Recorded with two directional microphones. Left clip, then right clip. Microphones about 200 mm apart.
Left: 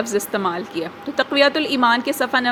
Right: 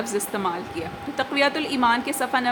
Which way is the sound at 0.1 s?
15° left (ahead or behind).